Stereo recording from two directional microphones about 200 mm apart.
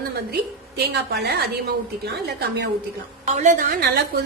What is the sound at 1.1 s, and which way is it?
Speech, 55° right (ahead or behind).